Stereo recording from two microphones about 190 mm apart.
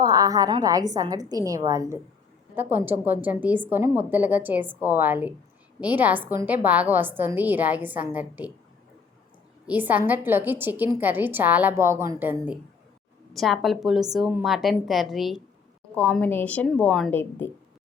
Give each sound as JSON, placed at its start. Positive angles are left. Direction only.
{"t": 0.0, "sound": "a woman's voice", "side_deg": -20}
{"t": 9.6, "sound": "a woman's voice", "side_deg": -10}
{"t": 13.3, "sound": "a woman's voice", "side_deg": 0}